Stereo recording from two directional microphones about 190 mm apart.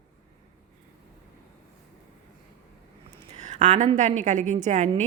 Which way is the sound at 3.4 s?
40° right (ahead or behind).